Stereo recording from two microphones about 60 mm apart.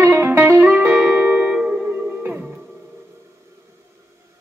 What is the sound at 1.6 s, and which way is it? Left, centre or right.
Music, right.